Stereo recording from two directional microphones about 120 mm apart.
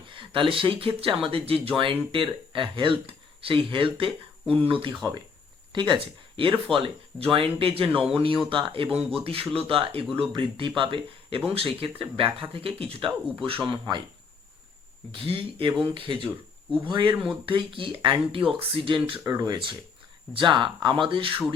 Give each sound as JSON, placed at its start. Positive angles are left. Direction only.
{"t": 0.1, "sound": "speech", "side_deg": -45}
{"t": 15.1, "sound": "speech", "side_deg": -50}
{"t": 19.2, "sound": "speech", "side_deg": -25}
{"t": 20.3, "sound": "speech", "side_deg": -40}